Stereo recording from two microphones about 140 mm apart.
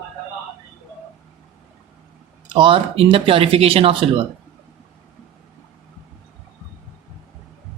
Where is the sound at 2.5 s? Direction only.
35° right (ahead or behind).